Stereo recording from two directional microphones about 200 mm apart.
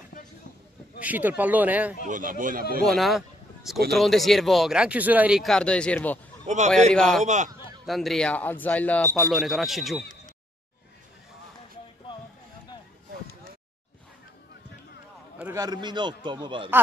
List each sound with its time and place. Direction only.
0.9 s speech: 10° right (ahead or behind)
2.0 s speech: 40° right (ahead or behind)
2.8 s speech: centre (ahead or behind)
6.4 s a man's voice: 35° right (ahead or behind)
6.9 s speech: centre (ahead or behind)
7.2 s speech: 35° right (ahead or behind)
7.8 s speech: centre (ahead or behind)
15.3 s a man's voice: 15° right (ahead or behind)